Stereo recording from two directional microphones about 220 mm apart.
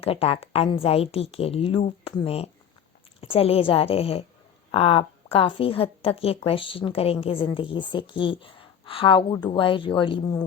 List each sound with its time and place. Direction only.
0.0 s a woman's voice: 25° left (ahead or behind)